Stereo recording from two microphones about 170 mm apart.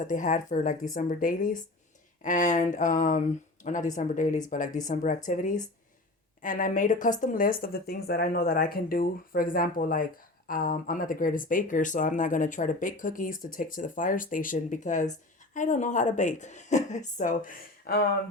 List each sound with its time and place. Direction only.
0.1 s speech: 50° left (ahead or behind)